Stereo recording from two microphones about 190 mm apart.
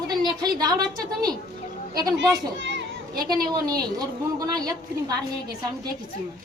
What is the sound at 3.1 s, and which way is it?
A woman's voice, 20° right (ahead or behind).